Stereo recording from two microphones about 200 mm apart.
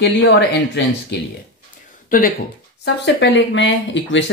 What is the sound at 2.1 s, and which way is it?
Speech, 45° left (ahead or behind).